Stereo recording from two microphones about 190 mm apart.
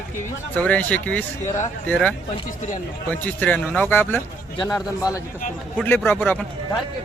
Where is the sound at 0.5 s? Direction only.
5° left (ahead or behind).